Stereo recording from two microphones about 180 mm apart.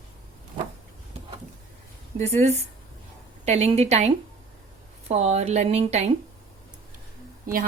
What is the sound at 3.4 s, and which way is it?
Speech, 35° right (ahead or behind).